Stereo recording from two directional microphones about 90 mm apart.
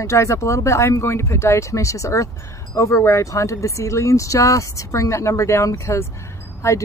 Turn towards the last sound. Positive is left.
turn(degrees=35)  # may be behind; listen again after turning